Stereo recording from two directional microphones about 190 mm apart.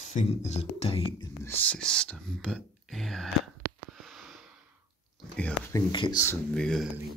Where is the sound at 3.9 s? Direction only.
Centre (ahead or behind).